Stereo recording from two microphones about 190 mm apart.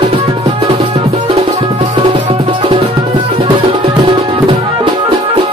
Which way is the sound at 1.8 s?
25° right (ahead or behind).